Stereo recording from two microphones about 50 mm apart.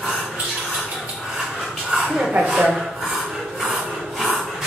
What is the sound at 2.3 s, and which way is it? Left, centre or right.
Speech, centre.